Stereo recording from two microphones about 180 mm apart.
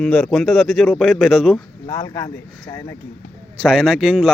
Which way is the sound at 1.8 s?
15° left (ahead or behind).